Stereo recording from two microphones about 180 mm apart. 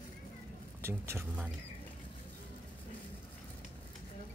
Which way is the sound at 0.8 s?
15° right (ahead or behind).